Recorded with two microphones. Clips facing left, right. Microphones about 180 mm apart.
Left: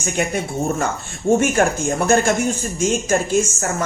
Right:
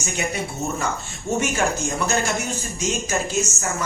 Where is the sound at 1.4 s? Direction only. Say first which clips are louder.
Left 5 dB; 50° left (ahead or behind).